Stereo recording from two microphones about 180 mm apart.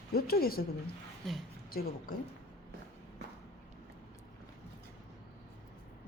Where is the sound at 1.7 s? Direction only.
55° left (ahead or behind).